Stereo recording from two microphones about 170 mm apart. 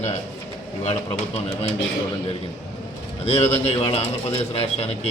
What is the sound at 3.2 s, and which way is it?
A man's voice, 40° left (ahead or behind).